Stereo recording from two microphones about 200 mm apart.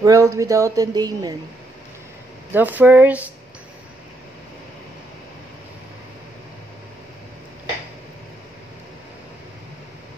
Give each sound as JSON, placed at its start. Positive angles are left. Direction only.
{"t": 0.0, "sound": "a woman's voice", "side_deg": -15}
{"t": 2.5, "sound": "a woman's voice", "side_deg": -10}